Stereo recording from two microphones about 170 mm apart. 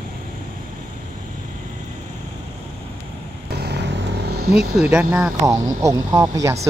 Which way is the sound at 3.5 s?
75° right (ahead or behind).